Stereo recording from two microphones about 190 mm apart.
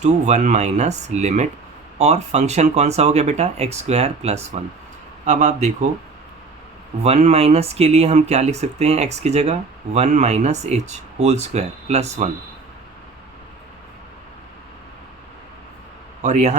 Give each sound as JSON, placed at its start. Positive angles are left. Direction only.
{"t": 0.0, "sound": "speech", "side_deg": -35}
{"t": 7.0, "sound": "speech", "side_deg": -35}
{"t": 16.2, "sound": "speech", "side_deg": -35}